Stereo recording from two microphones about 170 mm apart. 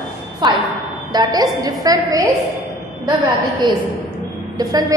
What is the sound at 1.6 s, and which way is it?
Speech, 20° right (ahead or behind).